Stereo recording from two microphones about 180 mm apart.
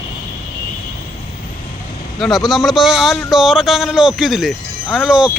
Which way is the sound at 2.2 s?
Centre (ahead or behind).